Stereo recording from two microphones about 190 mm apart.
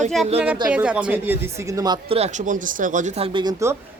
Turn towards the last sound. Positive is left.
turn(degrees=-20)  # may be behind; listen again after turning